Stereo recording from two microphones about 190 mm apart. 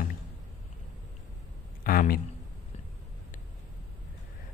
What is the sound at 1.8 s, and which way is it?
Speech, 50° left (ahead or behind).